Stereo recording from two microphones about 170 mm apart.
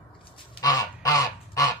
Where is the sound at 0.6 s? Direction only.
20° left (ahead or behind).